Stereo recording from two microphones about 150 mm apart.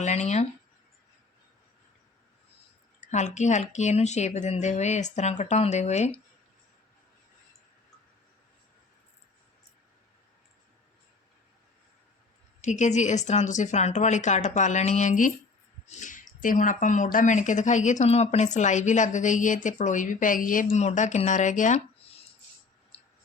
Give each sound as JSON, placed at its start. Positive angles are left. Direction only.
{"t": 0.0, "sound": "speech", "side_deg": 50}
{"t": 3.0, "sound": "a woman's voice", "side_deg": 50}
{"t": 12.6, "sound": "a woman's voice", "side_deg": 55}
{"t": 20.7, "sound": "a woman's voice", "side_deg": 50}